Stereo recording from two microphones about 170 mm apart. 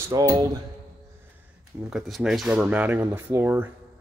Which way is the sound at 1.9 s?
Centre (ahead or behind).